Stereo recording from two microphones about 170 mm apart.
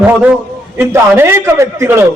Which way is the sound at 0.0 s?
10° right (ahead or behind).